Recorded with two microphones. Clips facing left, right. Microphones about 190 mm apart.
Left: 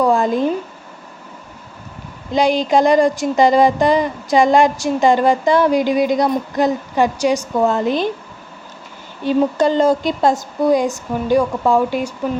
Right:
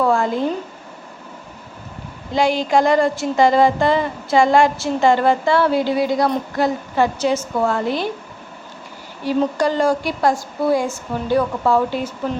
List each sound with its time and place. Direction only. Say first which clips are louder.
0.0 s a sound: left 3 dB; 15° left (ahead or behind)
2.3 s a woman's voice: left 2 dB; 20° left (ahead or behind)
9.2 s a woman's voice: left 3 dB; 20° left (ahead or behind)